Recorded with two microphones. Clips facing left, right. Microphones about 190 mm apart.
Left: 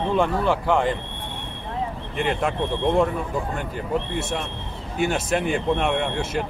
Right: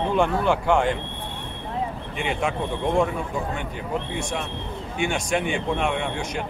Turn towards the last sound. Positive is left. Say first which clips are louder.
# left 2 dB
turn(degrees=5)  # may be behind; listen again after turning